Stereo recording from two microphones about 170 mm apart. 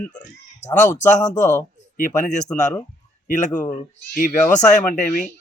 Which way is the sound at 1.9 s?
50° left (ahead or behind).